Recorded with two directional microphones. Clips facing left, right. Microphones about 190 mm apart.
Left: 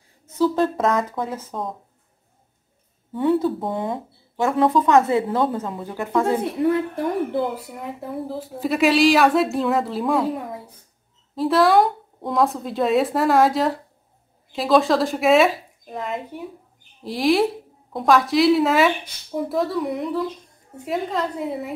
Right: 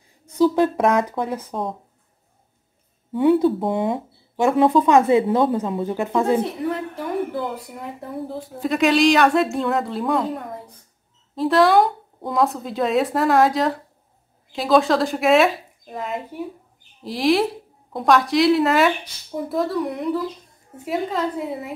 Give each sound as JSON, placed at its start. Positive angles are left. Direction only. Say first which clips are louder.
{"t": 0.4, "sound": "speech", "louder": "right 2 dB", "side_deg": -15}
{"t": 3.1, "sound": "speech", "louder": "right 3 dB", "side_deg": -15}
{"t": 7.5, "sound": "speech", "louder": "left 1 dB", "side_deg": 0}